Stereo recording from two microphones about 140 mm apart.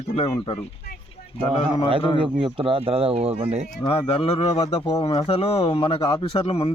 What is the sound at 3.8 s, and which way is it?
Speech, 40° left (ahead or behind).